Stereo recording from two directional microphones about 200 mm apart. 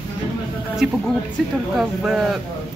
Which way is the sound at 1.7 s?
Centre (ahead or behind).